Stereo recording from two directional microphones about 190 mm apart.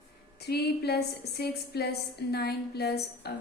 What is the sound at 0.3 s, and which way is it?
A woman's voice, 55° left (ahead or behind).